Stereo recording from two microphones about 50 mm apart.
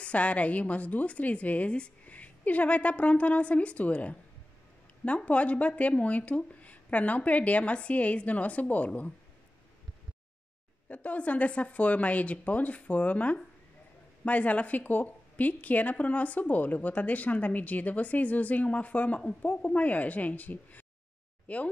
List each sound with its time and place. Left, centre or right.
0.0 s a woman's voice: left
10.9 s a woman's voice: left